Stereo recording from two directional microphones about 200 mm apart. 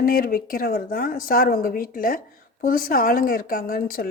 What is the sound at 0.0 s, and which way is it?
Speech, 45° left (ahead or behind).